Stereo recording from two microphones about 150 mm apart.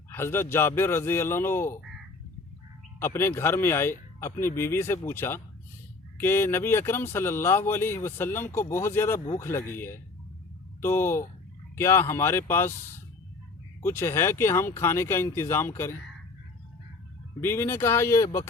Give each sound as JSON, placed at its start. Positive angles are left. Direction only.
{"t": 0.1, "sound": "speech", "side_deg": 15}
{"t": 3.0, "sound": "speech", "side_deg": 15}
{"t": 13.8, "sound": "speech", "side_deg": 15}
{"t": 17.4, "sound": "speech", "side_deg": 15}